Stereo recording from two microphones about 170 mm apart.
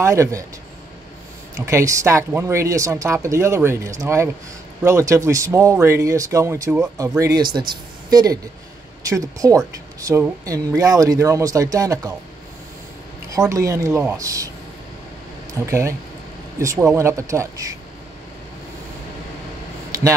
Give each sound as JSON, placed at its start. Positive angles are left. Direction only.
{"t": 0.0, "sound": "speech", "side_deg": -15}
{"t": 1.7, "sound": "speech", "side_deg": -15}
{"t": 13.3, "sound": "speech", "side_deg": -20}
{"t": 15.6, "sound": "speech", "side_deg": -15}